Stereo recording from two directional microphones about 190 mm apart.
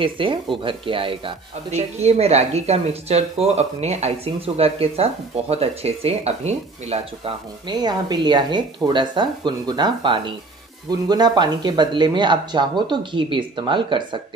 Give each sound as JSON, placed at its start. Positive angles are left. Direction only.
{"t": 0.0, "sound": "speech", "side_deg": -25}